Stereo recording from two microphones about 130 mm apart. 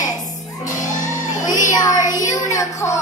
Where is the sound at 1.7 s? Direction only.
30° left (ahead or behind).